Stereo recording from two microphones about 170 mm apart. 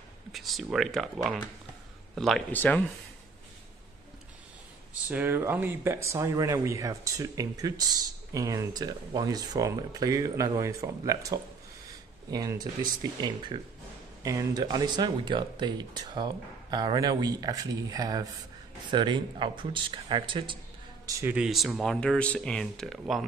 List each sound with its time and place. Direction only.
0.3 s speech: centre (ahead or behind)
5.0 s speech: 10° right (ahead or behind); by 20.5 s 30° right (ahead or behind)
21.0 s speech: 15° right (ahead or behind)
21.4 s speech: centre (ahead or behind)